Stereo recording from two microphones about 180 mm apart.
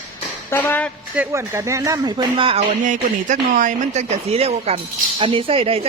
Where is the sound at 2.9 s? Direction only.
45° right (ahead or behind).